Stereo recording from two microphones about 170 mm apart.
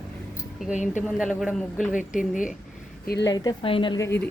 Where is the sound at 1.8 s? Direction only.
50° left (ahead or behind).